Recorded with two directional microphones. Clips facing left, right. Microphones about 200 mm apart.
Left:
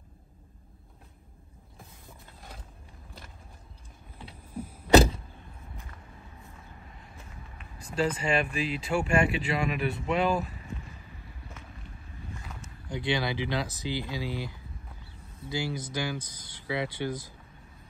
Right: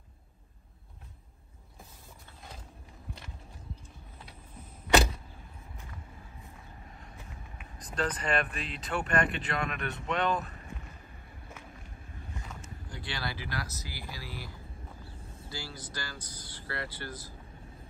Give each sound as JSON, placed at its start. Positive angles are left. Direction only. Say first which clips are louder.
{"t": 7.9, "sound": "speech", "louder": "left 4 dB", "side_deg": 5}
{"t": 12.6, "sound": "speech", "louder": "left 15 dB", "side_deg": 20}